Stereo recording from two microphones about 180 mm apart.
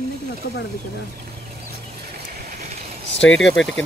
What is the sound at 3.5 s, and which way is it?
Speech, 90° left.